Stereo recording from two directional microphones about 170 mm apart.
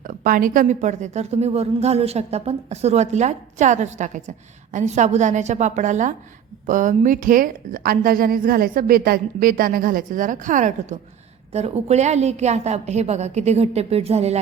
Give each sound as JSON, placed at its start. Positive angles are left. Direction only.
{"t": 0.0, "sound": "a woman's voice", "side_deg": -55}